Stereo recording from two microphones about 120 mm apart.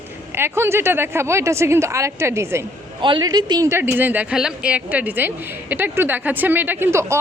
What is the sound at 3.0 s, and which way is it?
Speech, 40° right (ahead or behind).